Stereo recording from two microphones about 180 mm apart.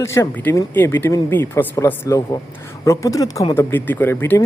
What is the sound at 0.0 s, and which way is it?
Speech, 15° left (ahead or behind).